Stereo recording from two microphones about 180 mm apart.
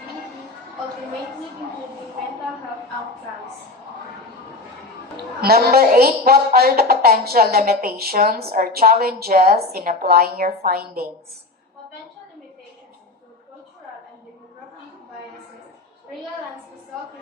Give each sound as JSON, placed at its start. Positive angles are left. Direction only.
{"t": 5.4, "sound": "a woman's voice", "side_deg": -60}